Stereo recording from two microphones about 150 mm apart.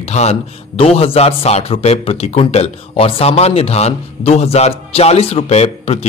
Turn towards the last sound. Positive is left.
turn(degrees=45)  # may be behind; listen again after turning